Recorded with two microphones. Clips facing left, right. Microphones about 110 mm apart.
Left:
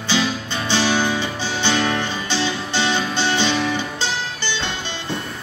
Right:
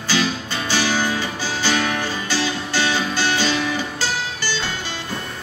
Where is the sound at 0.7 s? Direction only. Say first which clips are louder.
Left 2 dB; 20° left (ahead or behind).